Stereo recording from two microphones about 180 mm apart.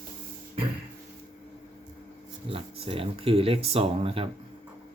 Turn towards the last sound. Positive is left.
turn(degrees=-30)  # may be behind; listen again after turning